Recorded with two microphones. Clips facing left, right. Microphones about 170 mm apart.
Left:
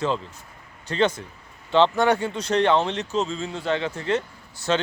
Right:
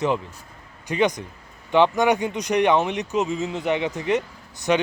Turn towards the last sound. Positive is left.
turn(degrees=-15)  # may be behind; listen again after turning